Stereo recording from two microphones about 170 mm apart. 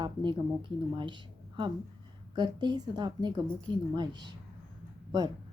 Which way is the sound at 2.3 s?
25° right (ahead or behind).